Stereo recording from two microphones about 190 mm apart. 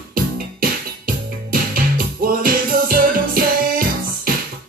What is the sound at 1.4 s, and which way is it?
Music, 50° right (ahead or behind).